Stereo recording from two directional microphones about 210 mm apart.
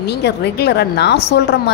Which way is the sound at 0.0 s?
50° left (ahead or behind).